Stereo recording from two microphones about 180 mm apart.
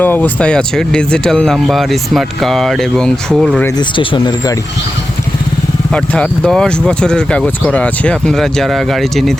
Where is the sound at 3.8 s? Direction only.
25° left (ahead or behind).